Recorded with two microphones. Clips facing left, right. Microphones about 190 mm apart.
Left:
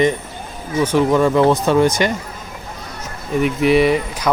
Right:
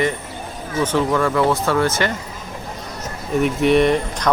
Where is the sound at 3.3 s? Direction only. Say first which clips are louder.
Left 1 dB; centre (ahead or behind).